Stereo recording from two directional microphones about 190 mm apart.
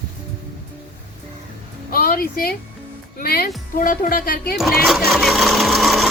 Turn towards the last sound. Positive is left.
turn(degrees=0)  # may be behind; listen again after turning